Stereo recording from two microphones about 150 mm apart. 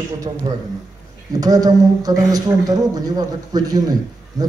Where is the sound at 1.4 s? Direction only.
25° right (ahead or behind).